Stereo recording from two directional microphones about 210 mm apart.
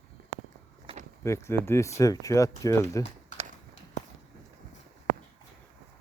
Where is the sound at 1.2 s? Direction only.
15° left (ahead or behind).